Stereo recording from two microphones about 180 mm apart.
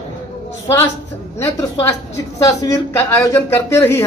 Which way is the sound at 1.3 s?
15° left (ahead or behind).